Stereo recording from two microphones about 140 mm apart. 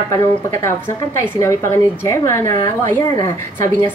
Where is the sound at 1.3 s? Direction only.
20° left (ahead or behind).